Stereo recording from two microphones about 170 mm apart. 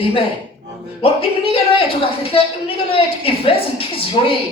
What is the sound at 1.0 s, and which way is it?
A woman's voice, 35° left (ahead or behind).